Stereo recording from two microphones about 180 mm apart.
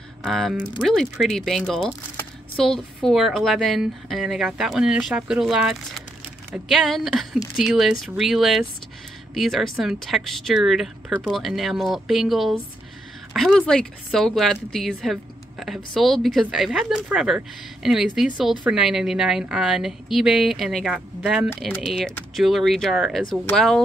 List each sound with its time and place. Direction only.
0.2 s a woman's voice: centre (ahead or behind)